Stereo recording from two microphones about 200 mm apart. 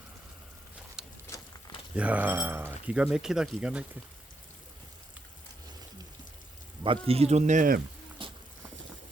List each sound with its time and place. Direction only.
1.0 s a sound: 5° right (ahead or behind)
2.0 s speech: 5° right (ahead or behind)
6.8 s speech: 25° right (ahead or behind)
8.2 s clip-clop: 25° right (ahead or behind)